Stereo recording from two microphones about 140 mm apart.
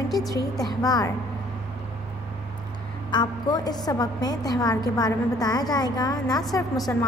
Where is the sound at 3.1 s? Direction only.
30° left (ahead or behind).